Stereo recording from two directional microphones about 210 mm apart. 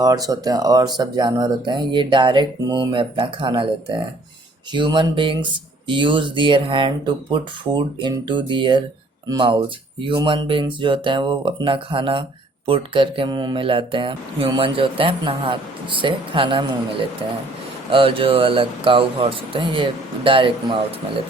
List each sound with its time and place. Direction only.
0.0 s speech: 20° right (ahead or behind)
4.7 s speech: 20° right (ahead or behind)